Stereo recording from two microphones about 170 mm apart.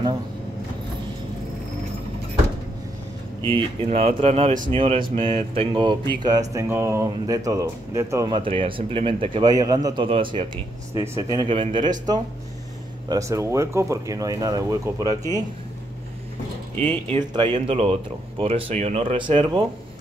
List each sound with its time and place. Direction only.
3.5 s speech: 35° right (ahead or behind); by 8.3 s 15° right (ahead or behind)
8.3 s speech: 30° right (ahead or behind)
13.1 s speech: 20° right (ahead or behind)
17.3 s speech: 25° right (ahead or behind)